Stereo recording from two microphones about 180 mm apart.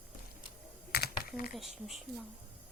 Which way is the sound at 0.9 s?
60° left (ahead or behind).